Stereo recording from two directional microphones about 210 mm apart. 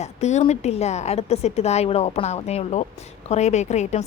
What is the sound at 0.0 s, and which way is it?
A woman's voice, 35° left (ahead or behind).